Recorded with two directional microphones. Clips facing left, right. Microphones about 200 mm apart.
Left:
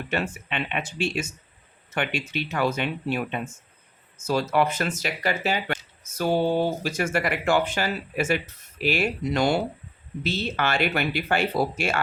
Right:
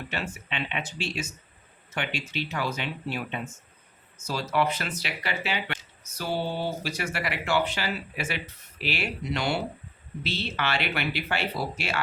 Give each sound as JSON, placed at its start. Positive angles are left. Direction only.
{"t": 0.1, "sound": "speech", "side_deg": 50}
{"t": 4.2, "sound": "speech", "side_deg": 50}